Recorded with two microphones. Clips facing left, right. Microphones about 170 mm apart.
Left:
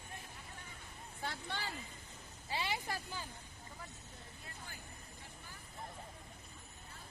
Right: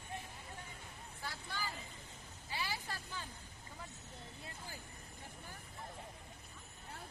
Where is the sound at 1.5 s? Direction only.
80° left.